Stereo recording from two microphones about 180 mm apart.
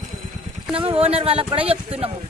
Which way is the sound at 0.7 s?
30° right (ahead or behind).